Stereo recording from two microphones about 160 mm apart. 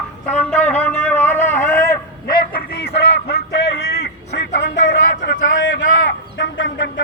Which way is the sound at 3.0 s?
90° left.